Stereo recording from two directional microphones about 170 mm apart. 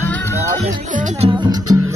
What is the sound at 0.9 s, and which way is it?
Music, 45° right (ahead or behind).